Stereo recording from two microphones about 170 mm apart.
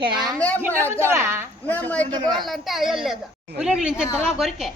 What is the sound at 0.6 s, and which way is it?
Speech, 15° right (ahead or behind).